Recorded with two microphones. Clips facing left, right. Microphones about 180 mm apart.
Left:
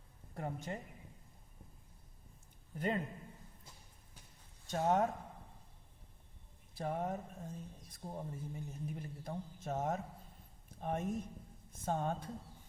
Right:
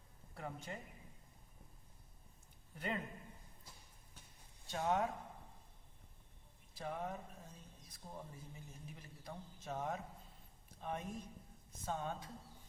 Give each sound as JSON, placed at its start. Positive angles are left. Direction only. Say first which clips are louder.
{"t": 0.3, "sound": "a woman's voice", "louder": "left 5 dB", "side_deg": 40}
{"t": 2.7, "sound": "a woman's voice", "louder": "left 6 dB", "side_deg": 40}
{"t": 4.7, "sound": "speech", "louder": "left 5 dB", "side_deg": 40}
{"t": 6.7, "sound": "speech", "louder": "left 5 dB", "side_deg": 45}